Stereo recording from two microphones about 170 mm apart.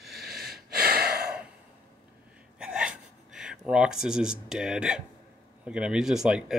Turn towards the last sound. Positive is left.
turn(degrees=-5)  # may be behind; listen again after turning